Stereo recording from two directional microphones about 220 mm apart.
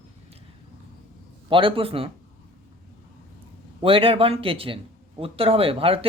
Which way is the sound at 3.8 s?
25° right (ahead or behind).